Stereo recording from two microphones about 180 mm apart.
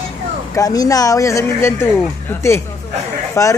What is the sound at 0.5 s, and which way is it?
Speech, 20° left (ahead or behind).